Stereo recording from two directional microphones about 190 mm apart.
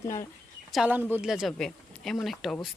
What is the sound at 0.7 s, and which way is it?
Speech, 5° right (ahead or behind).